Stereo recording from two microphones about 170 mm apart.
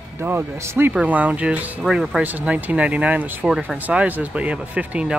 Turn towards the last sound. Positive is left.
turn(degrees=-10)  # may be behind; listen again after turning